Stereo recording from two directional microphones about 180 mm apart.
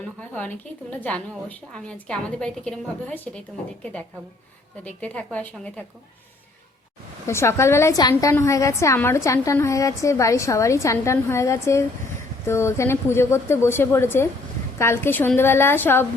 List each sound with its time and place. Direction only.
0.3 s a woman's voice: 10° left (ahead or behind)
4.8 s a woman's voice: 10° left (ahead or behind)
7.3 s a woman's voice: 15° left (ahead or behind)